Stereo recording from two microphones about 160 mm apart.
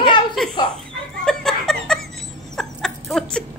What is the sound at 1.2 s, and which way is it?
Chuckle, 5° left (ahead or behind).